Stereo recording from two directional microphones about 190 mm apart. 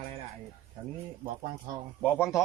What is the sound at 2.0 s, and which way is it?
Speech, 10° left (ahead or behind).